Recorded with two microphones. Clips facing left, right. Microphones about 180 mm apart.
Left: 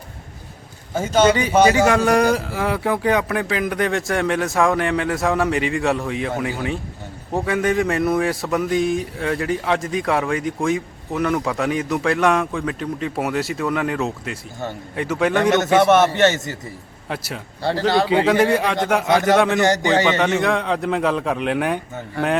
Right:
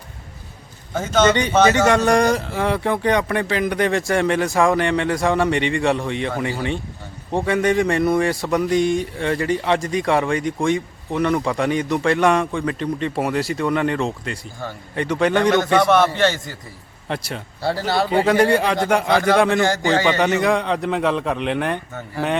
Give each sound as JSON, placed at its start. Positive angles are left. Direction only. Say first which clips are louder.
{"t": 0.9, "sound": "speech", "louder": "left 1 dB", "side_deg": 10}
{"t": 15.8, "sound": "a man's voice", "louder": "left 2 dB", "side_deg": 20}
{"t": 17.1, "sound": "speech", "louder": "right 2 dB", "side_deg": 5}